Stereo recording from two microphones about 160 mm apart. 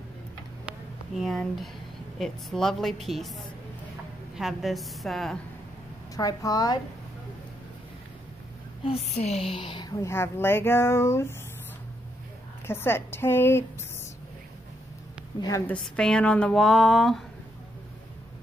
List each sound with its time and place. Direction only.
0.7 s a sound: centre (ahead or behind)
2.1 s speech: 5° left (ahead or behind)
4.4 s speech: centre (ahead or behind)
6.1 s a woman's voice: 20° left (ahead or behind)
8.8 s a woman's voice: 40° left (ahead or behind); by 11.3 s 15° left (ahead or behind)
12.6 s a woman's voice: 15° left (ahead or behind)
15.6 s speech: 5° left (ahead or behind)